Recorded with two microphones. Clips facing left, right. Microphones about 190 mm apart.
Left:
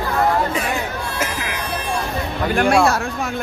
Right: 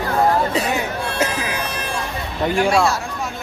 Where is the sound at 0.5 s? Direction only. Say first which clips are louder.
Right 2 dB; 20° right (ahead or behind).